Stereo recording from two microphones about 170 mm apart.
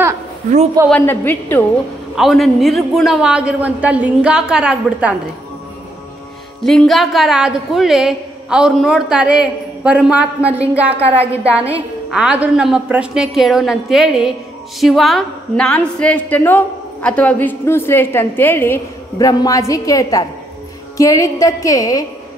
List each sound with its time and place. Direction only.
0.8 s a woman's voice: 10° left (ahead or behind)
2.1 s a woman's voice: centre (ahead or behind)
6.6 s a woman's voice: centre (ahead or behind); by 22.0 s 20° left (ahead or behind)